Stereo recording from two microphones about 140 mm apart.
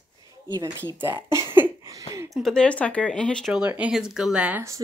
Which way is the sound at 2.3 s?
5° left (ahead or behind).